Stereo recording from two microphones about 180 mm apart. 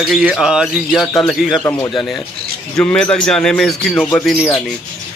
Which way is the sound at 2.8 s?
5° left (ahead or behind).